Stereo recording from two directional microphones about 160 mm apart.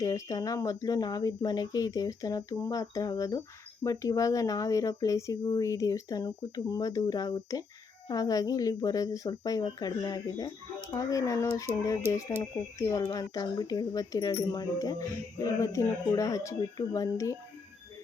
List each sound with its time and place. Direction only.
0.0 s speech: 20° left (ahead or behind)